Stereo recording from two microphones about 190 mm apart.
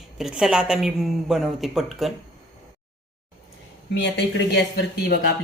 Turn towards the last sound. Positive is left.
turn(degrees=60)  # may be behind; listen again after turning